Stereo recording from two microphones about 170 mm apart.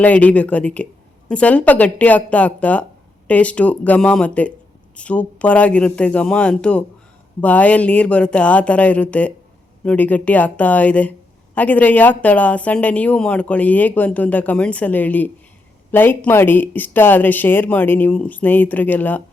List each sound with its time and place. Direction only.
0.0 s speech: 10° left (ahead or behind)